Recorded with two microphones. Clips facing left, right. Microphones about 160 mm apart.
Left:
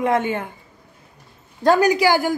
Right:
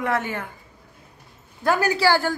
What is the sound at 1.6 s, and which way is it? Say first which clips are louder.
Speech: left 5 dB; 15° left (ahead or behind).